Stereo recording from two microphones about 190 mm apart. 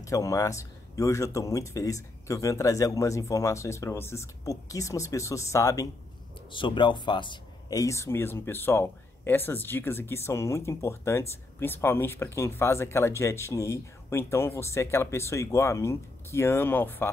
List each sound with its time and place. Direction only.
0.0 s speech: 15° left (ahead or behind)